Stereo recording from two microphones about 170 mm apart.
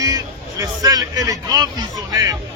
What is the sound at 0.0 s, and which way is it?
Speech, 20° right (ahead or behind).